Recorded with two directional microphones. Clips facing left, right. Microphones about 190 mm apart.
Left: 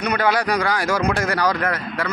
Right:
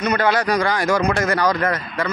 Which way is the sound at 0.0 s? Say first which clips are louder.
Right 1 dB; 10° left (ahead or behind).